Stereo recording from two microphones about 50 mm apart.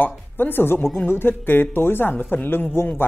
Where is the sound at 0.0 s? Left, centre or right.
Left.